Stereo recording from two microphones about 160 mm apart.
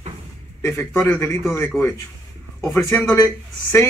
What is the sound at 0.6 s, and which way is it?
Speech, 15° left (ahead or behind).